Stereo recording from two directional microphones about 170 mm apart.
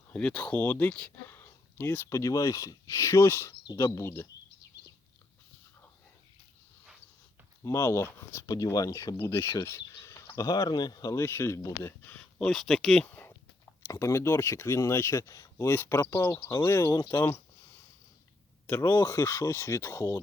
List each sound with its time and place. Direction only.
0.1 s speech: 5° left (ahead or behind)
7.6 s speech: 15° left (ahead or behind)
18.7 s speech: 15° left (ahead or behind)